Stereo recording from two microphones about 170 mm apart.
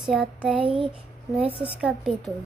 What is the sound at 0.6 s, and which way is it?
Speech, 30° right (ahead or behind).